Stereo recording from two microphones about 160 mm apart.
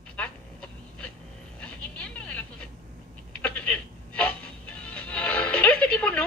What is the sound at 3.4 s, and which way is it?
Music, 10° left (ahead or behind).